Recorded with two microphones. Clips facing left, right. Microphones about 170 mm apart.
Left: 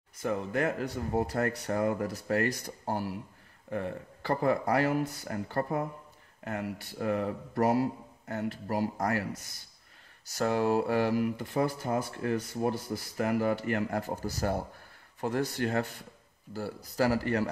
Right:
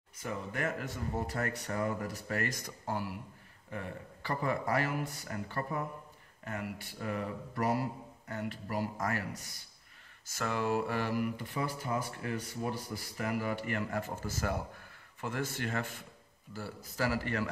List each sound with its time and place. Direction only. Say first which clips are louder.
0.2 s speech: left 7 dB; 45° left (ahead or behind)
10.3 s speech: left 6 dB; 45° left (ahead or behind)